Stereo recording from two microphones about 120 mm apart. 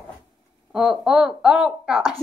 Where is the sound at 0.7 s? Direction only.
5° right (ahead or behind).